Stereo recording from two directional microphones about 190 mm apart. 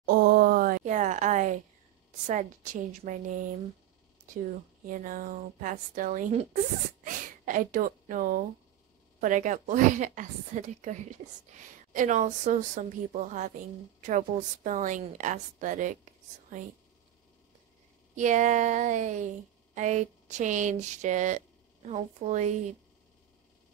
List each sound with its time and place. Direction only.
0.0 s a sound: 50° right (ahead or behind)
2.2 s a woman's voice: 40° right (ahead or behind)
4.8 s a woman's voice: 45° right (ahead or behind)
18.1 s a woman's voice: 40° right (ahead or behind)